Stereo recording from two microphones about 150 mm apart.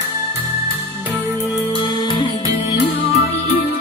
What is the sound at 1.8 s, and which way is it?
Music, 30° left (ahead or behind).